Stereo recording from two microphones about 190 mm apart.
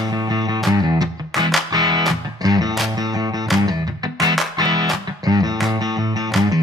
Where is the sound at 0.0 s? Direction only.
20° right (ahead or behind).